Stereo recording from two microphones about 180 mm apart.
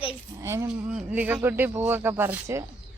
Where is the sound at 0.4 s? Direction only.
15° right (ahead or behind).